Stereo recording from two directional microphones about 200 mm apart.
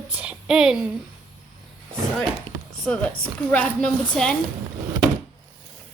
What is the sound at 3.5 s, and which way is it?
Speech, 5° left (ahead or behind).